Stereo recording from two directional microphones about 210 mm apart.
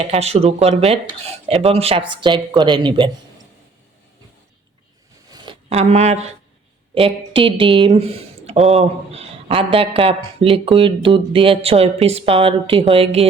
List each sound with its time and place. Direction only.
0.0 s speech: 30° right (ahead or behind)
5.3 s a sound: 25° right (ahead or behind)
6.9 s speech: 25° right (ahead or behind)